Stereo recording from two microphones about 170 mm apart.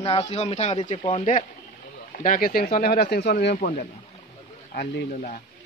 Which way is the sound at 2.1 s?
50° left (ahead or behind).